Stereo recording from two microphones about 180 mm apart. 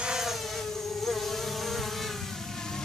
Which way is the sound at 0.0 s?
5° right (ahead or behind).